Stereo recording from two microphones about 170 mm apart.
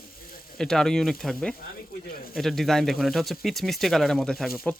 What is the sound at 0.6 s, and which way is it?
Speech, 5° left (ahead or behind).